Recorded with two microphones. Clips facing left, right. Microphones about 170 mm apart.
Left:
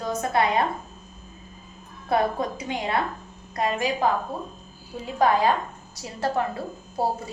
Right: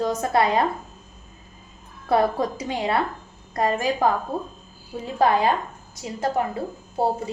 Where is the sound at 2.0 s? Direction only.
35° right (ahead or behind).